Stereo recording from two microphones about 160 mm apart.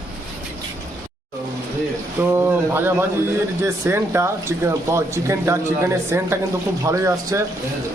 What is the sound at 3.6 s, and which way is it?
Speech, 15° right (ahead or behind).